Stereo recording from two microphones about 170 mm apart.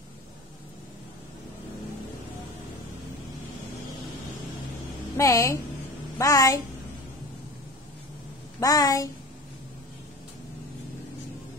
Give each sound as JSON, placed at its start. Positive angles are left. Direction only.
{"t": 5.1, "sound": "a woman's voice", "side_deg": 20}
{"t": 8.5, "sound": "a woman's voice", "side_deg": 20}